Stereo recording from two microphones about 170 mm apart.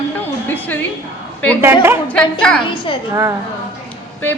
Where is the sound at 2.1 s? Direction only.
5° left (ahead or behind).